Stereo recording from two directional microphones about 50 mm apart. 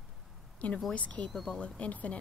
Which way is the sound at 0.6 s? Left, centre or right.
Left.